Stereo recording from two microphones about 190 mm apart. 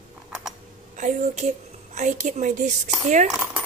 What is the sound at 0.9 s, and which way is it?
A woman's voice, 40° right (ahead or behind).